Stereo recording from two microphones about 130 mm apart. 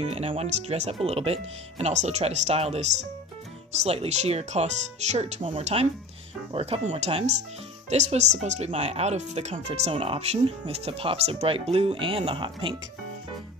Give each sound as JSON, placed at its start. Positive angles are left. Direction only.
{"t": 0.0, "sound": "speech", "side_deg": -50}
{"t": 6.5, "sound": "speech", "side_deg": -45}